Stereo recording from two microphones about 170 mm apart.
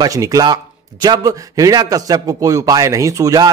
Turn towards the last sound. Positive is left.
turn(degrees=-20)  # may be behind; listen again after turning